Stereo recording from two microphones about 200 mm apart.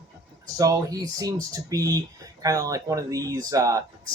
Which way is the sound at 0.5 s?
15° right (ahead or behind).